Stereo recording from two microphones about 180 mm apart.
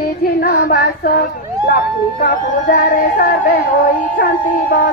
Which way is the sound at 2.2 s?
45° left (ahead or behind).